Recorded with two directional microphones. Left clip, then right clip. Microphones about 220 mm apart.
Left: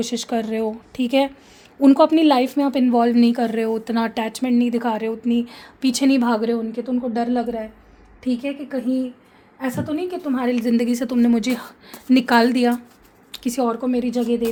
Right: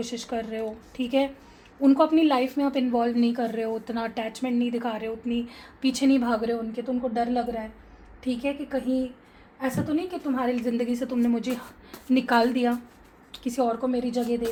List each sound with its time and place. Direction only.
0.0 s a woman's voice: 50° left (ahead or behind)
9.6 s a woman's voice: 55° left (ahead or behind)